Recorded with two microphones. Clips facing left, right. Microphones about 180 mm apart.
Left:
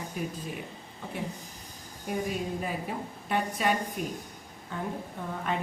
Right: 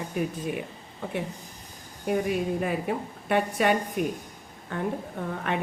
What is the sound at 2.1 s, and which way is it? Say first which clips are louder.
A woman's voice: right 6 dB; 65° right (ahead or behind).